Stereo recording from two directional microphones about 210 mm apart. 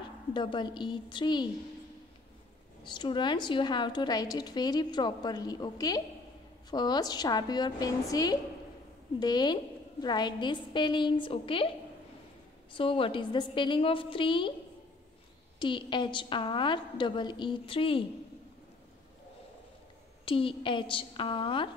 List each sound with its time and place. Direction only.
0.3 s a woman's voice: 20° left (ahead or behind)
2.8 s a woman's voice: 20° left (ahead or behind)
12.7 s a woman's voice: 25° left (ahead or behind)
15.6 s a woman's voice: 20° left (ahead or behind)
20.2 s a woman's voice: 25° left (ahead or behind)